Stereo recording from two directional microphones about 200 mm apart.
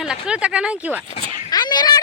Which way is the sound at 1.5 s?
20° left (ahead or behind).